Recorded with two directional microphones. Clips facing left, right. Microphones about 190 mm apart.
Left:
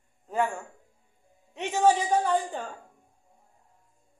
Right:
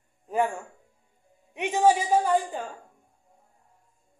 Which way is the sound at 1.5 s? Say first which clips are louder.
Right 1 dB; 15° right (ahead or behind).